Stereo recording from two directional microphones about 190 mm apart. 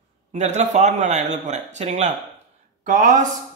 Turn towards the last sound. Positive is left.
turn(degrees=-40)  # may be behind; listen again after turning